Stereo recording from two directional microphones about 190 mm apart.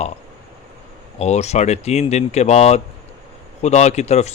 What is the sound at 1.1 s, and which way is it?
Speech, 35° left (ahead or behind).